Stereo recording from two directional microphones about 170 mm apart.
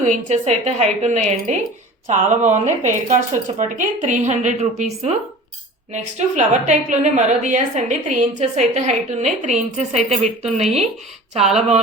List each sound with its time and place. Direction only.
0.0 s a woman's voice: 45° right (ahead or behind)
5.9 s a woman's voice: 45° right (ahead or behind)